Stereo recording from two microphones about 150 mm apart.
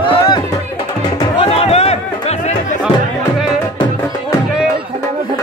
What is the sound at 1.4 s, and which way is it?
Music, 40° left (ahead or behind).